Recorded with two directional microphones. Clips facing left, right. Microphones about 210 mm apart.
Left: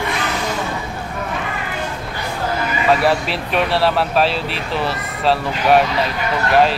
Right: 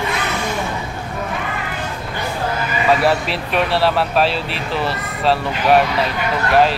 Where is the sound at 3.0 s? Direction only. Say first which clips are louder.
Even; centre (ahead or behind).